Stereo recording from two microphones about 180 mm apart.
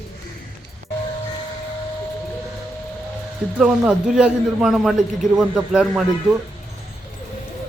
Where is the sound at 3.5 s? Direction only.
5° right (ahead or behind).